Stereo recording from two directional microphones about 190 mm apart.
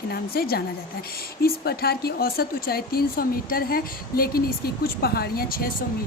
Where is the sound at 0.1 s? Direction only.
55° left (ahead or behind).